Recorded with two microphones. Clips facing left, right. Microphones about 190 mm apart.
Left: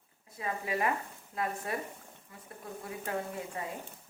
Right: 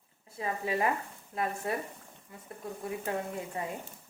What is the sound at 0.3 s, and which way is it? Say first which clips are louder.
Speech: right 2 dB; 30° right (ahead or behind).